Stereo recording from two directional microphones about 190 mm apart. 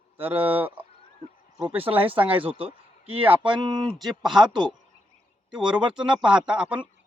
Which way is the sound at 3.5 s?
25° right (ahead or behind).